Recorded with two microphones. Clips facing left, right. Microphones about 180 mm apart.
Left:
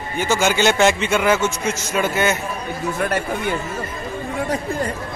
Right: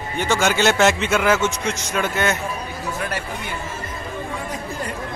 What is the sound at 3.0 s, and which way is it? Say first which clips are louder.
Speech: left 6 dB; 50° left (ahead or behind).